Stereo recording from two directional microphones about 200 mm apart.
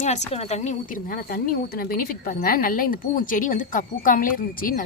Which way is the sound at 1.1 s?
50° left (ahead or behind).